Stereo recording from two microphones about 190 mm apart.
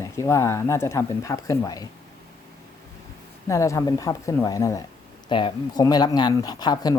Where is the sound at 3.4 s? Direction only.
15° left (ahead or behind).